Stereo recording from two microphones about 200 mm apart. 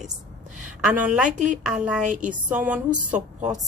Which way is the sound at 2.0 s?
40° right (ahead or behind).